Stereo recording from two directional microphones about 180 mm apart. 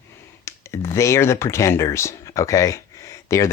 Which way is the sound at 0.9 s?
15° left (ahead or behind).